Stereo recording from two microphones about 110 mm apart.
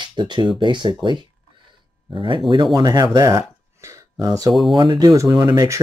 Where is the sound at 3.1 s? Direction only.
30° right (ahead or behind).